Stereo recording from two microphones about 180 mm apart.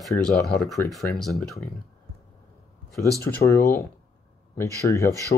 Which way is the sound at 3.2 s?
15° left (ahead or behind).